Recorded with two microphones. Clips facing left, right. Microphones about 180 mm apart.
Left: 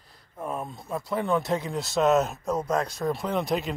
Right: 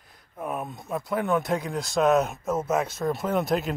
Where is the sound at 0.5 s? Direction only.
15° right (ahead or behind).